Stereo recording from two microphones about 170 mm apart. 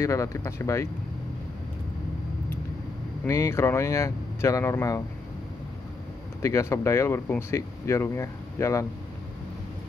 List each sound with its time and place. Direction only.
0.0 s speech: 20° left (ahead or behind)
3.3 s speech: 15° left (ahead or behind)
6.4 s speech: 15° left (ahead or behind)